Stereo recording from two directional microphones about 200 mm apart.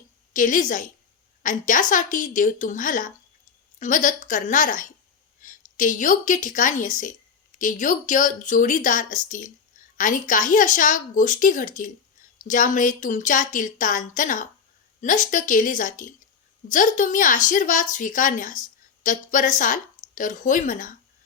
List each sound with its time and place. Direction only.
0.3 s a woman's voice: 40° left (ahead or behind)